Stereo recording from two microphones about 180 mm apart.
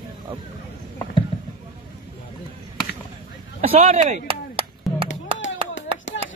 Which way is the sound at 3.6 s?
35° right (ahead or behind).